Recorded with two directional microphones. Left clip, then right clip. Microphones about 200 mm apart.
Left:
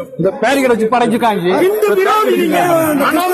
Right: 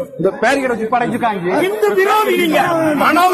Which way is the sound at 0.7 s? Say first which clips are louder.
Left 4 dB; 50° left (ahead or behind).